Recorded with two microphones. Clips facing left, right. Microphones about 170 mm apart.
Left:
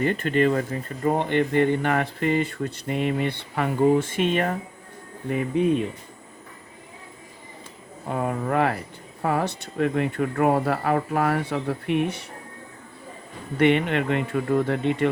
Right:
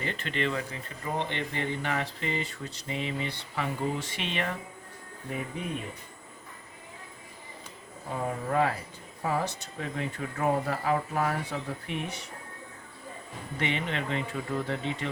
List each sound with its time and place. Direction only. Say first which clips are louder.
0.0 s speech: left 11 dB; 50° left (ahead or behind)
8.0 s speech: left 6 dB; 65° left (ahead or behind)
13.6 s speech: left 12 dB; 60° left (ahead or behind)